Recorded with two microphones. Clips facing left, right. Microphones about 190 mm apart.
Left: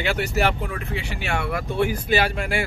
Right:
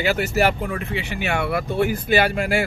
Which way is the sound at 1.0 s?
65° right (ahead or behind).